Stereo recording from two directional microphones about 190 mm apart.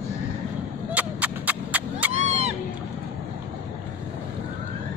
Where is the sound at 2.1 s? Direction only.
35° right (ahead or behind).